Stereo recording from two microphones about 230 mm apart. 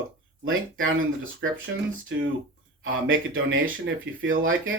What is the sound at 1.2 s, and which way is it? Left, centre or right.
Speech, right.